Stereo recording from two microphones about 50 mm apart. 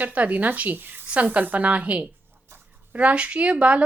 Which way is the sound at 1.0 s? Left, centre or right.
Right.